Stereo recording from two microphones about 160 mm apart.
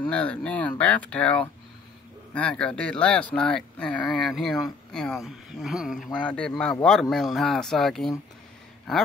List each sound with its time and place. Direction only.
0.1 s speech: 5° left (ahead or behind)